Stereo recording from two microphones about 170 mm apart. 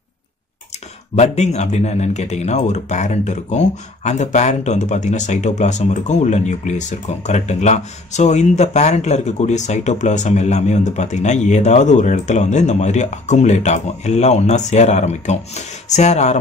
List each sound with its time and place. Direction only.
1.1 s speech: 40° left (ahead or behind)